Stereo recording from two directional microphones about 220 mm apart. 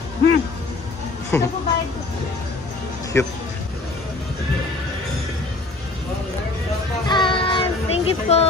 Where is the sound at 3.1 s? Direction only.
10° left (ahead or behind).